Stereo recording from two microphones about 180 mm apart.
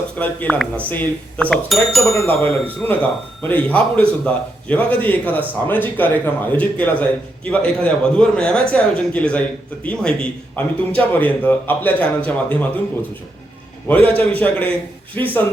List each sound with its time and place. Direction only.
0.2 s a man's voice: 10° left (ahead or behind)
2.2 s speech: 30° right (ahead or behind)
2.5 s a man's voice: 10° left (ahead or behind)
13.8 s a man's voice: 10° left (ahead or behind)